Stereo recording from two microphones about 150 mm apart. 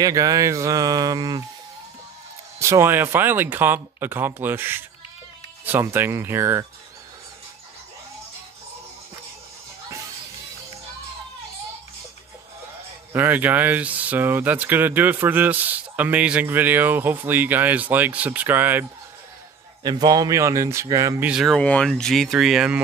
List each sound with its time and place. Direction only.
0.0 s a man's voice: 25° right (ahead or behind)
2.6 s speech: 15° right (ahead or behind)
13.1 s speech: 10° right (ahead or behind)
19.8 s a man's voice: 30° right (ahead or behind)
21.3 s speech: 5° right (ahead or behind)
21.5 s speech: 10° left (ahead or behind)